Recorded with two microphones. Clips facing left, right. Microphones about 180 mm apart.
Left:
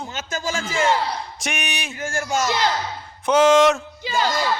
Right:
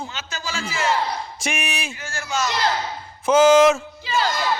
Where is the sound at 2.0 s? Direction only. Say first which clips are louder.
Left 4 dB; 50° left (ahead or behind).